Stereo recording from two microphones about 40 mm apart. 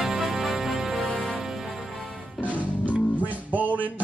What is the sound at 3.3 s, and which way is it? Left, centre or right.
Music, right.